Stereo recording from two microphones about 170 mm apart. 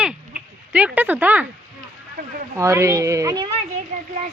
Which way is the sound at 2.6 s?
15° right (ahead or behind).